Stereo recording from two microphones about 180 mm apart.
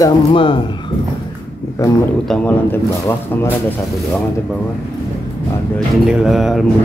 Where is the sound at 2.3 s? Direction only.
10° left (ahead or behind).